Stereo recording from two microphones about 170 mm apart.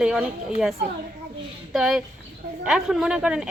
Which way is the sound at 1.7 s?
5° right (ahead or behind).